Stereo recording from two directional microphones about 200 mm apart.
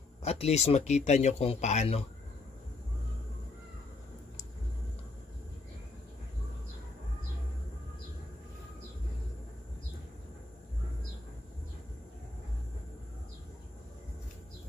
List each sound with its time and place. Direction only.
0.2 s speech: 30° left (ahead or behind)